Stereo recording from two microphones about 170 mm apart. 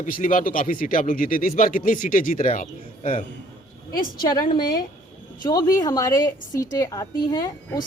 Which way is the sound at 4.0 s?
25° left (ahead or behind).